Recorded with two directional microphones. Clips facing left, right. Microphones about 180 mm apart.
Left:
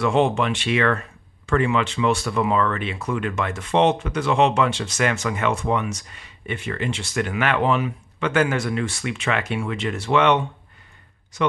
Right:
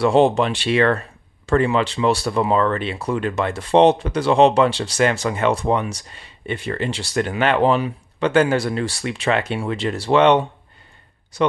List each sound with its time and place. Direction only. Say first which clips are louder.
0.0 s speech: right 4 dB; 35° right (ahead or behind)